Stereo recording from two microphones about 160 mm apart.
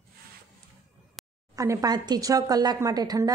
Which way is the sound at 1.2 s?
Centre (ahead or behind).